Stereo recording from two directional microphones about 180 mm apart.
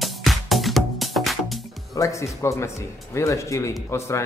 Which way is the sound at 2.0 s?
15° left (ahead or behind).